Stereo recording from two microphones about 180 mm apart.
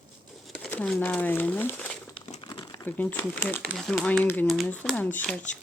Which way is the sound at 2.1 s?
25° left (ahead or behind).